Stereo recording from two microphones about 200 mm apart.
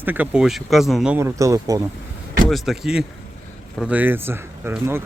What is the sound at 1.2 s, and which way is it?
Speech, 15° right (ahead or behind).